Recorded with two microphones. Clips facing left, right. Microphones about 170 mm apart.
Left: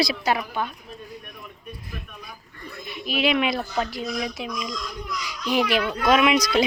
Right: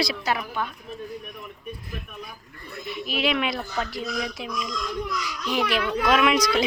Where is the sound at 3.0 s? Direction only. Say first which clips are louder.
Left 3 dB; 5° left (ahead or behind).